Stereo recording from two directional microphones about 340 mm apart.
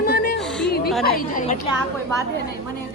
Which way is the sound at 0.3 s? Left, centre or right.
Centre.